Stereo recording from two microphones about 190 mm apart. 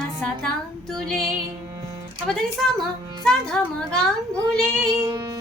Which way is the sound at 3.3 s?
5° left (ahead or behind).